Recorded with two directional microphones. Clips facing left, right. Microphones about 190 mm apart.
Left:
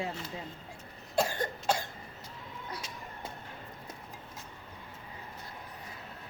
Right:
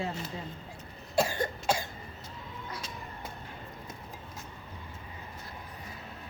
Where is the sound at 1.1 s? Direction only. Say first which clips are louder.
Right 2 dB; 10° right (ahead or behind).